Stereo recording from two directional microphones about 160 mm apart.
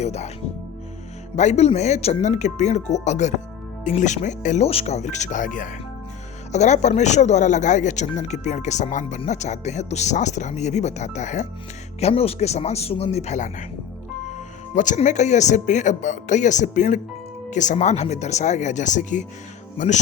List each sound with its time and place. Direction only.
0.0 s speech: 45° left (ahead or behind)
1.4 s speech: 45° left (ahead or behind)
14.8 s speech: 50° left (ahead or behind)